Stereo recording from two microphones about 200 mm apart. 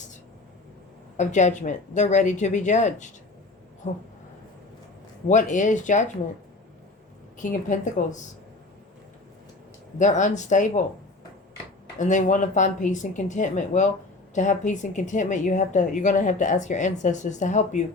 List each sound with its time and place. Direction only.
1.1 s a woman's voice: 35° left (ahead or behind)
5.3 s a woman's voice: 40° left (ahead or behind)
7.4 s a woman's voice: 40° left (ahead or behind)
10.0 s a woman's voice: 35° left (ahead or behind)
11.9 s a woman's voice: 40° left (ahead or behind)